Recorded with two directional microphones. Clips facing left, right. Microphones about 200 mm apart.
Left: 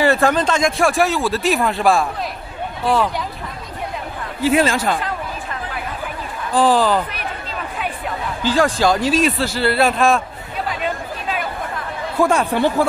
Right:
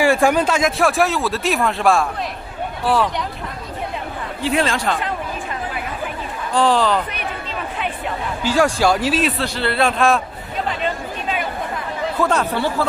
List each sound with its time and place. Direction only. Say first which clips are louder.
0.0 s speech: even; 10° right (ahead or behind)
4.4 s speech: left 4 dB; 5° left (ahead or behind)
6.5 s speech: left 1 dB; 5° left (ahead or behind)
8.5 s speech: even; 10° right (ahead or behind)
10.8 s chatter: even; centre (ahead or behind)
12.2 s speech: left 4 dB; 10° left (ahead or behind)